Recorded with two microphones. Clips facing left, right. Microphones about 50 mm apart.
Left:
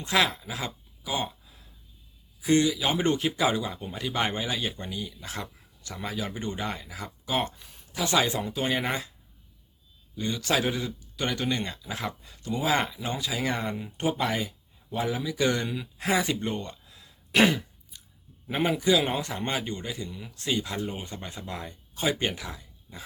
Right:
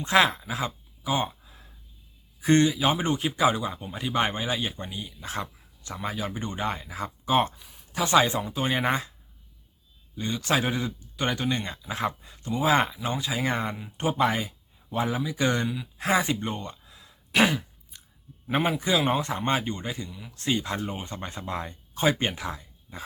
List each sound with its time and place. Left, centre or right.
0.0 s speech: right
2.4 s speech: right
3.0 s speech: centre
10.2 s speech: right
15.6 s speech: centre
16.0 s speech: right
17.3 s speech: centre
17.9 s a sound: right
18.8 s speech: right
20.1 s speech: centre
20.3 s speech: right
22.1 s speech: right
22.4 s a sound: right